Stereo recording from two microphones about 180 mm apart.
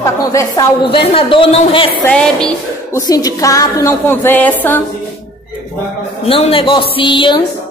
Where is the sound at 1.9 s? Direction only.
5° left (ahead or behind).